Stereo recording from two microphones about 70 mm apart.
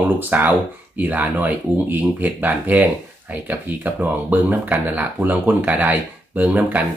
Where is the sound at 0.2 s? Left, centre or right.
Right.